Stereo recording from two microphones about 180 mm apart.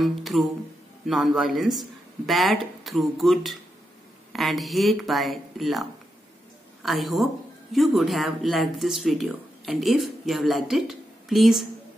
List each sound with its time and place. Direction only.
0.0 s speech: centre (ahead or behind)